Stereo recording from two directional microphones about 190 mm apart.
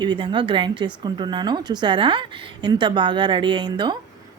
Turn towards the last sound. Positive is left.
turn(degrees=-25)  # may be behind; listen again after turning